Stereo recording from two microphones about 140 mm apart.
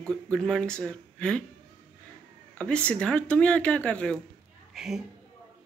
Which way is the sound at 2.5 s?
10° left (ahead or behind).